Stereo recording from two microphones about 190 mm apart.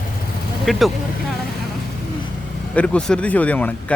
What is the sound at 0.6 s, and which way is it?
Speech, centre (ahead or behind).